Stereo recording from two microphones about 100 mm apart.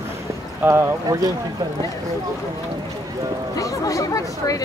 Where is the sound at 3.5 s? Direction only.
35° left (ahead or behind).